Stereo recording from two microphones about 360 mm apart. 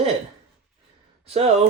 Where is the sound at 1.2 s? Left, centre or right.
Centre.